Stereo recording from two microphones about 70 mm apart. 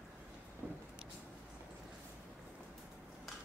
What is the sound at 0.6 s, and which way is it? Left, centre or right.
Vehicle, right.